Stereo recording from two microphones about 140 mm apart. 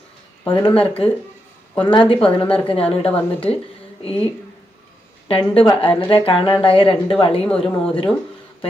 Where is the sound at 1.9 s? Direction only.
40° left (ahead or behind).